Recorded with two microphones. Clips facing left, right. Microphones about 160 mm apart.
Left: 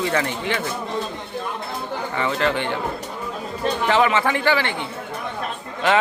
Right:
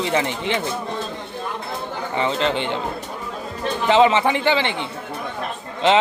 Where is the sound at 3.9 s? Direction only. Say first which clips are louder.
Right 4 dB; 20° right (ahead or behind).